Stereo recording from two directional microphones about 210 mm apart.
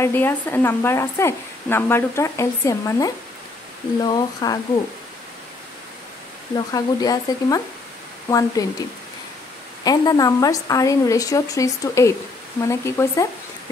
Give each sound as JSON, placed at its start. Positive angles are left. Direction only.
{"t": 0.0, "sound": "speech", "side_deg": 10}
{"t": 6.5, "sound": "speech", "side_deg": 20}
{"t": 9.8, "sound": "speech", "side_deg": 20}